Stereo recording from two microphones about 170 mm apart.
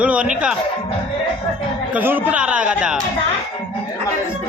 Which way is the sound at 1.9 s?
10° right (ahead or behind).